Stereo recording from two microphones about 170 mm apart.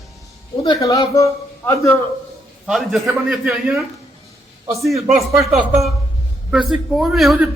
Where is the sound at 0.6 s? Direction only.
20° left (ahead or behind).